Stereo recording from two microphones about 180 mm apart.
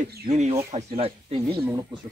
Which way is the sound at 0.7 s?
30° right (ahead or behind).